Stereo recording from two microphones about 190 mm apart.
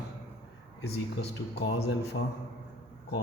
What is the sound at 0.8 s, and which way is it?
Speech, 60° left (ahead or behind).